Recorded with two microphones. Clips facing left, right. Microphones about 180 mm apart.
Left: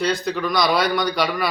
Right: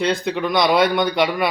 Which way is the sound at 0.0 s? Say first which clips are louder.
Right 2 dB; 25° right (ahead or behind).